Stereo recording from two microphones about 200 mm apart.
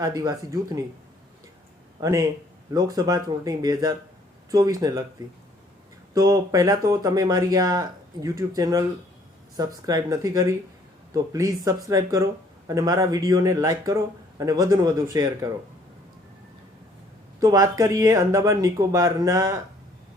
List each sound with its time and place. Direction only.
0.0 s speech: 20° right (ahead or behind)
2.0 s speech: 15° right (ahead or behind)
6.1 s speech: 20° right (ahead or behind)
17.4 s speech: 15° right (ahead or behind)